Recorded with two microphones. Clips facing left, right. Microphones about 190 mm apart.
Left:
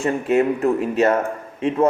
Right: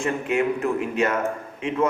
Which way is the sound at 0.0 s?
35° left (ahead or behind).